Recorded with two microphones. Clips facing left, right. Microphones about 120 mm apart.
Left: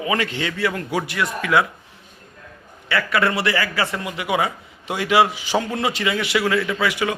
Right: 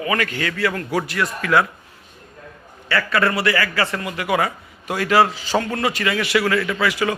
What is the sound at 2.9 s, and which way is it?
A man's voice, 15° left (ahead or behind).